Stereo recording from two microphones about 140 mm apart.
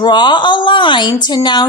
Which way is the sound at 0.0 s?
30° left (ahead or behind).